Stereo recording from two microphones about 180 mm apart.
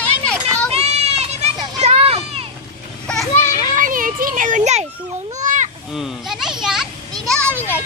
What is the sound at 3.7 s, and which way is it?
Children playing, 50° right (ahead or behind).